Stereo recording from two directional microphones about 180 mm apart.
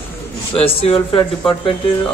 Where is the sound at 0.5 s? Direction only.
35° left (ahead or behind).